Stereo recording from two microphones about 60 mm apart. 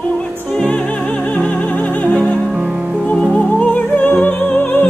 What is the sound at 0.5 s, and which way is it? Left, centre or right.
Music, centre.